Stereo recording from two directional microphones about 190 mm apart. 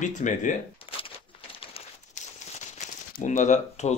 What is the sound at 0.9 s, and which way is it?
Speech, 25° left (ahead or behind).